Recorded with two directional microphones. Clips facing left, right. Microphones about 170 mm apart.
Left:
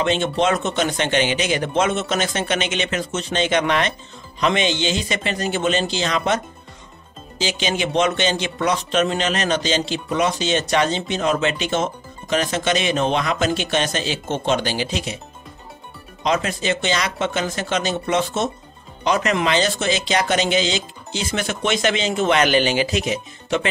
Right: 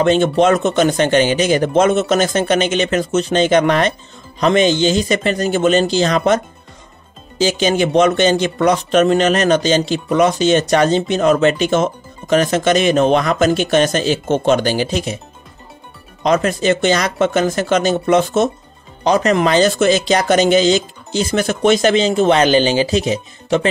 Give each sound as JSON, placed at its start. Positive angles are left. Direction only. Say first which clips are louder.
{"t": 0.0, "sound": "speech", "louder": "right 7 dB", "side_deg": -45}
{"t": 16.2, "sound": "speech", "louder": "right 6 dB", "side_deg": -50}
{"t": 19.0, "sound": "speech", "louder": "right 6 dB", "side_deg": -35}